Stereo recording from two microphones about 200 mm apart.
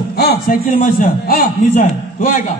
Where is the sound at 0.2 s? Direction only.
50° left (ahead or behind).